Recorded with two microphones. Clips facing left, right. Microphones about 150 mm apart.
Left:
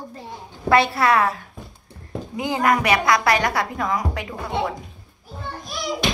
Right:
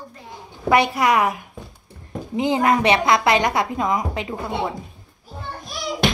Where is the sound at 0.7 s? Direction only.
15° right (ahead or behind).